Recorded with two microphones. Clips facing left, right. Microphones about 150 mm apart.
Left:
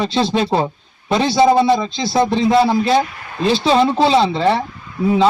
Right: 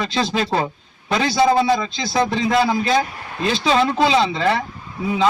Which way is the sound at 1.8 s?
Centre (ahead or behind).